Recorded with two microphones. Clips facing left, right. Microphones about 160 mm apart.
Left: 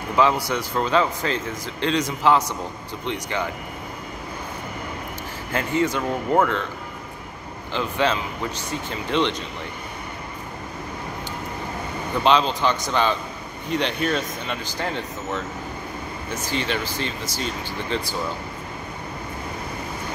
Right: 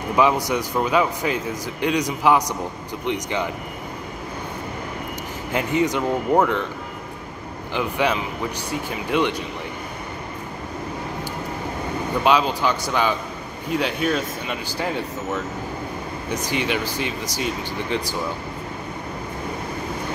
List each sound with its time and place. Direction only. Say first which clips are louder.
0.1 s speech: right 1 dB; 15° right (ahead or behind)
5.5 s speech: right 1 dB; 15° right (ahead or behind)
7.7 s speech: right 1 dB; 15° right (ahead or behind)
12.2 s speech: even; 10° right (ahead or behind)